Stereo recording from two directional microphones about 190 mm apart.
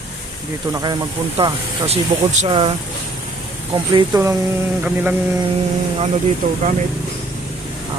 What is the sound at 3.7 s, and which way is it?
Speech, 25° right (ahead or behind).